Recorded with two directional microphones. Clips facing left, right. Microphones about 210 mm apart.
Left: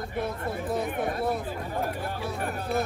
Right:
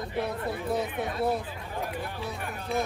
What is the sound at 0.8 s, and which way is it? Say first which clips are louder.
Speech: left 1 dB; 55° left (ahead or behind).